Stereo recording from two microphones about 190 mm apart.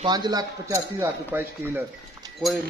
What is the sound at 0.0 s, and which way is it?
A man's voice, 20° right (ahead or behind).